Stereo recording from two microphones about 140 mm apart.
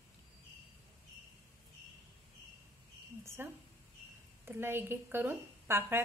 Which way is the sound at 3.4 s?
15° right (ahead or behind).